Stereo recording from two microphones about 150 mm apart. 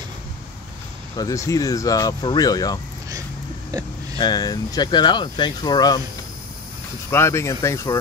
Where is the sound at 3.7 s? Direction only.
25° right (ahead or behind).